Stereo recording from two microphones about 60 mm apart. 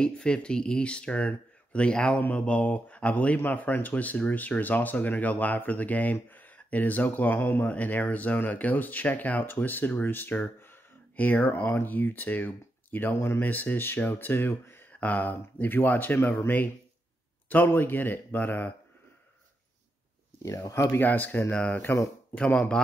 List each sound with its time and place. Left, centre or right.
0.0 s speech: centre; by 13.1 s left
13.1 s speech: left
13.4 s speech: left
14.9 s speech: left
20.7 s speech: left
21.0 s speech: left
22.3 s speech: left